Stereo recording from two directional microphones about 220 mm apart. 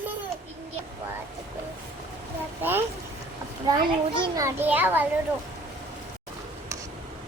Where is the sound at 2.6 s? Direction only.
10° right (ahead or behind).